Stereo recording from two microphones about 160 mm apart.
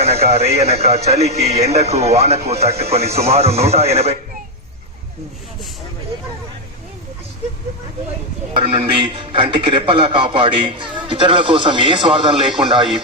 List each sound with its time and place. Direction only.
0.0 s a man's voice: 40° right (ahead or behind)
8.5 s a man's voice: 35° right (ahead or behind)